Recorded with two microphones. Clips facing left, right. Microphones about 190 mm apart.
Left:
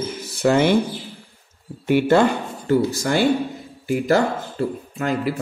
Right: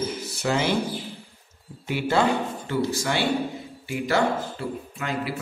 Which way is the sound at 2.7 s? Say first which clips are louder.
Left 7 dB; 45° left (ahead or behind).